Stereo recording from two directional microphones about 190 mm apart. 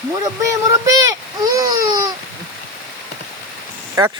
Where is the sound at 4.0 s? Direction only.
20° right (ahead or behind).